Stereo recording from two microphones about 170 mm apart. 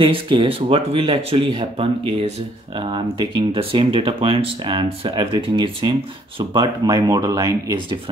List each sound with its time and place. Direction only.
0.0 s speech: 30° right (ahead or behind)